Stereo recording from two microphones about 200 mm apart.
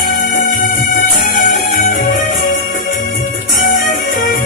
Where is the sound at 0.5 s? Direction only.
40° left (ahead or behind).